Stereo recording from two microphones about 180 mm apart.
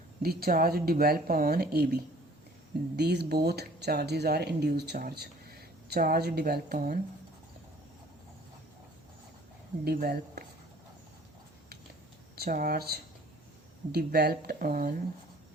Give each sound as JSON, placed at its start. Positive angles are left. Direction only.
{"t": 0.2, "sound": "speech", "side_deg": -60}
{"t": 9.8, "sound": "speech", "side_deg": -60}
{"t": 12.4, "sound": "speech", "side_deg": -55}